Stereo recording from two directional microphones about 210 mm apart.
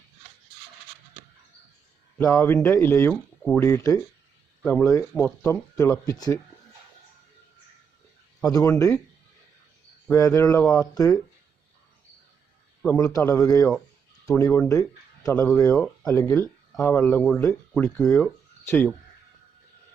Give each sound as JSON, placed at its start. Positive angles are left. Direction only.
{"t": 2.1, "sound": "speech", "side_deg": 15}
{"t": 8.4, "sound": "speech", "side_deg": 15}
{"t": 10.1, "sound": "speech", "side_deg": 15}
{"t": 12.8, "sound": "speech", "side_deg": 15}
{"t": 15.7, "sound": "speech", "side_deg": 5}
{"t": 18.6, "sound": "speech", "side_deg": 10}